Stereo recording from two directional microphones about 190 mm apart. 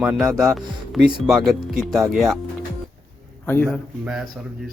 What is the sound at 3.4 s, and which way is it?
Speech, 10° left (ahead or behind).